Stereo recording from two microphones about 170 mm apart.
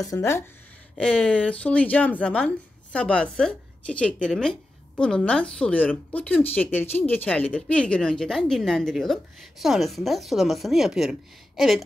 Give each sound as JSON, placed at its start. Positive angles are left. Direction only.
{"t": 0.0, "sound": "speech", "side_deg": 15}